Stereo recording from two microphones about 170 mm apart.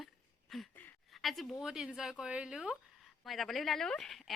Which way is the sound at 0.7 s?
10° left (ahead or behind).